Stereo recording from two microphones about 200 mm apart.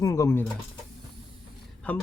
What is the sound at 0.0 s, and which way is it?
Speech, 15° left (ahead or behind).